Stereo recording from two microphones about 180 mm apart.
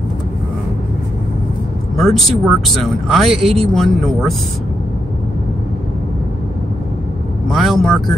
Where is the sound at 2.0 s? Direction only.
Centre (ahead or behind).